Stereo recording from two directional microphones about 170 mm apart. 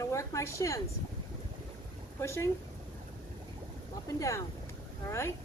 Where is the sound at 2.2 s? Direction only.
15° left (ahead or behind).